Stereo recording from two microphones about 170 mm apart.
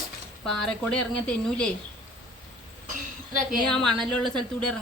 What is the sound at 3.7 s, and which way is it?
Speech, 5° left (ahead or behind).